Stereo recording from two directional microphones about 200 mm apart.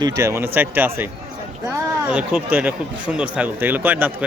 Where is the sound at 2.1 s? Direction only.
5° right (ahead or behind).